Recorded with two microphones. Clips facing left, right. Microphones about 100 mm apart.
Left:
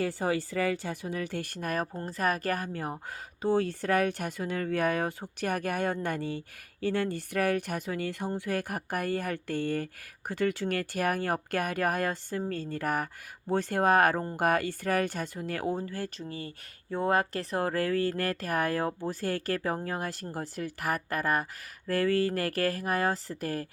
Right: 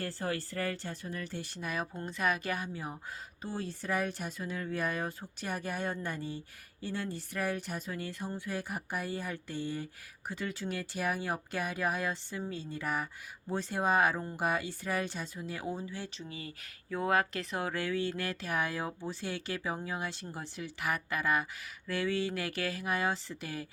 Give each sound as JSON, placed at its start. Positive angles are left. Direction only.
{"t": 0.0, "sound": "speech", "side_deg": 90}
{"t": 1.9, "sound": "speech", "side_deg": 35}
{"t": 3.4, "sound": "speech", "side_deg": 65}
{"t": 8.4, "sound": "speech", "side_deg": 65}
{"t": 16.9, "sound": "speech", "side_deg": 30}